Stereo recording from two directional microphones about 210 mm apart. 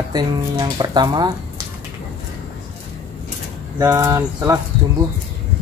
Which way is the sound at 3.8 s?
15° right (ahead or behind).